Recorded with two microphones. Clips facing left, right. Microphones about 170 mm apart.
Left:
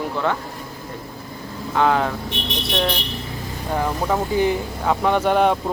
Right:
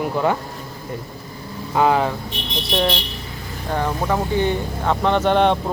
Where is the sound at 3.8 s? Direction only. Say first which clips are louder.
Even; 5° left (ahead or behind).